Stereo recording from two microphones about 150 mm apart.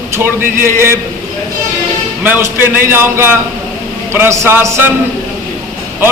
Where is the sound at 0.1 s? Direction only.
15° right (ahead or behind).